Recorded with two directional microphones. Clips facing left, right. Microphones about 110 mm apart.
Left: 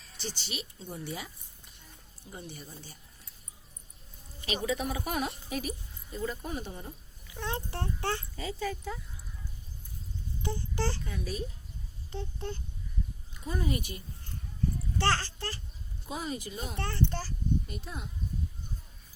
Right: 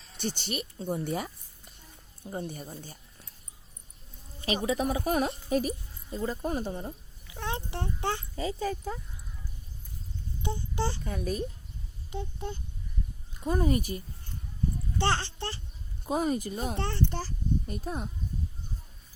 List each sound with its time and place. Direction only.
0.2 s speech: 50° right (ahead or behind)
2.3 s speech: 45° right (ahead or behind)
4.4 s speech: 35° right (ahead or behind)
7.3 s speech: 20° right (ahead or behind)
8.6 s speech: 40° right (ahead or behind)
10.4 s speech: 20° right (ahead or behind)
11.0 s speech: 45° right (ahead or behind)
12.1 s speech: 15° right (ahead or behind)
13.4 s speech: 45° right (ahead or behind)
14.9 s speech: 20° right (ahead or behind)
16.0 s speech: 45° right (ahead or behind)
16.7 s a child's voice: 25° right (ahead or behind)
17.7 s speech: 40° right (ahead or behind)